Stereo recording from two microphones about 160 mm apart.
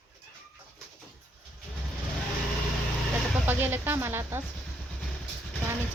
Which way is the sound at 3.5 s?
10° right (ahead or behind).